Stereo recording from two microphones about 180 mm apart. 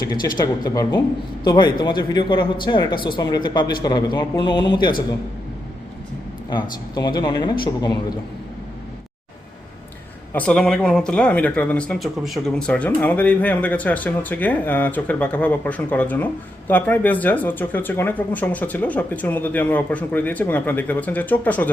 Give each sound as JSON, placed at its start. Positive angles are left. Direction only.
{"t": 0.0, "sound": "speech", "side_deg": 20}
{"t": 6.5, "sound": "speech", "side_deg": 25}
{"t": 10.3, "sound": "speech", "side_deg": 5}